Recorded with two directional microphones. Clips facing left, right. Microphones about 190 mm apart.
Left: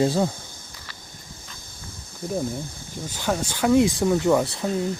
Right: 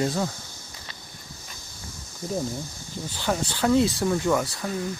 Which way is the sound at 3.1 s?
10° left (ahead or behind).